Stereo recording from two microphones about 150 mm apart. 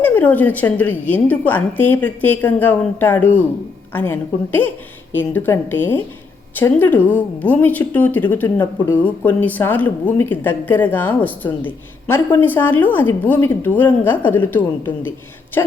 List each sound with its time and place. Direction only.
0.0 s a woman's voice: 10° left (ahead or behind)